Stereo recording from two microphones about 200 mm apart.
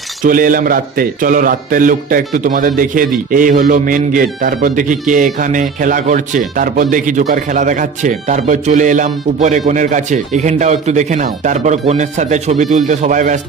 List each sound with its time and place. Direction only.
0.2 s speech: 45° right (ahead or behind)